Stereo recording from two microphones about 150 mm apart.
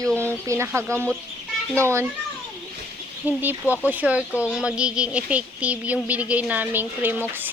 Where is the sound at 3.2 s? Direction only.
10° right (ahead or behind).